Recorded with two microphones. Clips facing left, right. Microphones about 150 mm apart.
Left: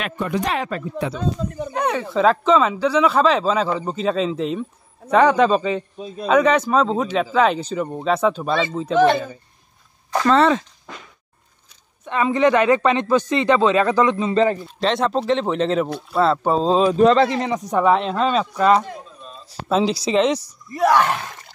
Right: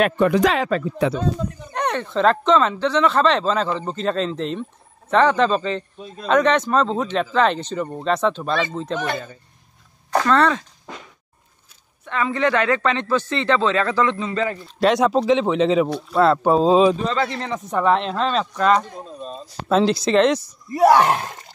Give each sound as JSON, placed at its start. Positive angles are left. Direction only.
{"t": 0.2, "sound": "speech", "side_deg": -90}
{"t": 1.7, "sound": "speech", "side_deg": 5}
{"t": 10.2, "sound": "speech", "side_deg": 5}
{"t": 12.0, "sound": "speech", "side_deg": 20}
{"t": 14.6, "sound": "speech", "side_deg": 0}
{"t": 17.3, "sound": "speech", "side_deg": 15}
{"t": 19.0, "sound": "a sound", "side_deg": -35}
{"t": 19.7, "sound": "speech", "side_deg": 5}
{"t": 20.7, "sound": "a sound", "side_deg": -35}